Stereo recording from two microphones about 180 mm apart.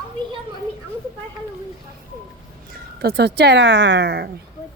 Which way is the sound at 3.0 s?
65° right (ahead or behind).